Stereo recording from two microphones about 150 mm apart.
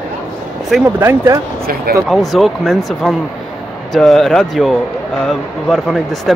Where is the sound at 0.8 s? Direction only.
20° right (ahead or behind).